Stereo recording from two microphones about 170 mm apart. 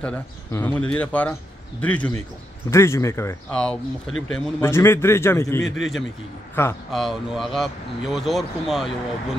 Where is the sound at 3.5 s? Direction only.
5° left (ahead or behind).